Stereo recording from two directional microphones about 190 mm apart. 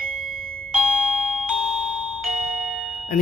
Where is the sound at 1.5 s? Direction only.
Centre (ahead or behind).